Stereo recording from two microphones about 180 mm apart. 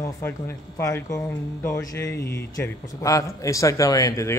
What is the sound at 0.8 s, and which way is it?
Speech, 15° left (ahead or behind).